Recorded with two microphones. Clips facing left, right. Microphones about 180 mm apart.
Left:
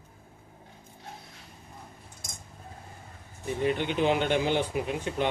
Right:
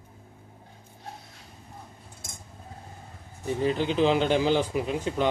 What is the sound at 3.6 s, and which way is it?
Speech, 35° right (ahead or behind).